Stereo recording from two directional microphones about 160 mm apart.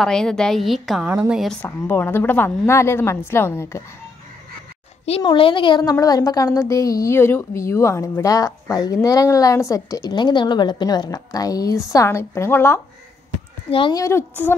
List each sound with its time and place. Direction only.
0.0 s a woman's voice: 5° left (ahead or behind)
1.6 s a woman's voice: 10° left (ahead or behind)
5.2 s a woman's voice: 30° left (ahead or behind); by 12.8 s 15° left (ahead or behind)
13.7 s speech: 35° left (ahead or behind)
13.9 s a woman's voice: 15° left (ahead or behind)